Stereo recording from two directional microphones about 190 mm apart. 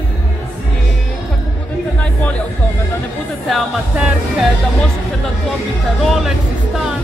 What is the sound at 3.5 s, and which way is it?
Speech, 5° right (ahead or behind).